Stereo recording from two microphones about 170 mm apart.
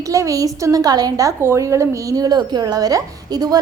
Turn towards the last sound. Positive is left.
turn(degrees=-20)  # may be behind; listen again after turning